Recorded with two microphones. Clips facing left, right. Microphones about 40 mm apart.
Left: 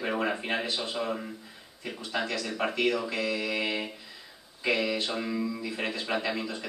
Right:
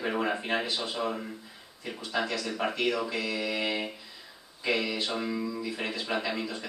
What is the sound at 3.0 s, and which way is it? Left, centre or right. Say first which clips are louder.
Speech: left 1 dB; centre.